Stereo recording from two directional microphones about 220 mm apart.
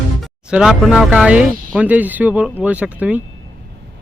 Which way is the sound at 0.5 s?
Centre (ahead or behind).